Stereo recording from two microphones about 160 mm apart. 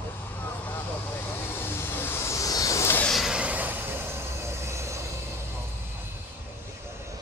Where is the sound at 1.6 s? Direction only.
15° left (ahead or behind).